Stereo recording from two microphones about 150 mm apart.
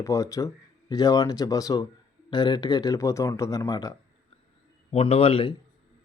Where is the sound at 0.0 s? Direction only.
20° left (ahead or behind).